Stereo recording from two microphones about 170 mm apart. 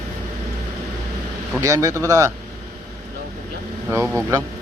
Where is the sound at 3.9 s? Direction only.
10° right (ahead or behind).